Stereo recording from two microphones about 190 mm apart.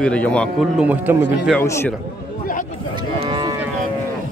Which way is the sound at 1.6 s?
15° left (ahead or behind).